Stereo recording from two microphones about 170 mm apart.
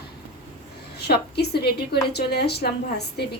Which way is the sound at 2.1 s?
70° left (ahead or behind).